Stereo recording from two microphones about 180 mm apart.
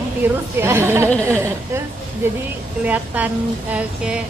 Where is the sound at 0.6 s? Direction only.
15° right (ahead or behind).